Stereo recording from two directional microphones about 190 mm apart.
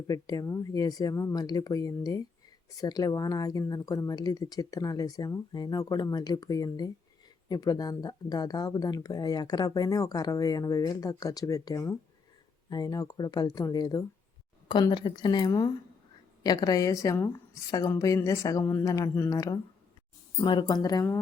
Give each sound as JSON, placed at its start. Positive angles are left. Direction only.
{"t": 0.1, "sound": "a woman's voice", "side_deg": 20}